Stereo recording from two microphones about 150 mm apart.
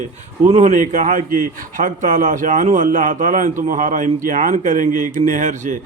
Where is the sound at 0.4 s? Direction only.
50° right (ahead or behind).